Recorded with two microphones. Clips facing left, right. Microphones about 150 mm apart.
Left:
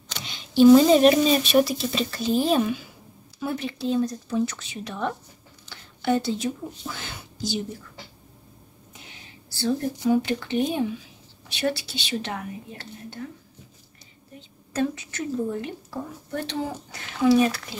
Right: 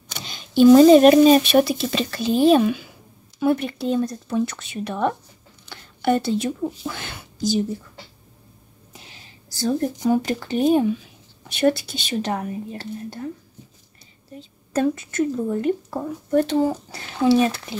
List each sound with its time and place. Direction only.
0.3 s speech: 50° right (ahead or behind)
9.5 s speech: 40° right (ahead or behind)
14.7 s speech: 50° right (ahead or behind)
16.9 s speech: 30° right (ahead or behind)